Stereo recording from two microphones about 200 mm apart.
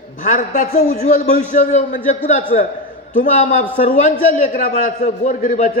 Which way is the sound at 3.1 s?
40° left (ahead or behind).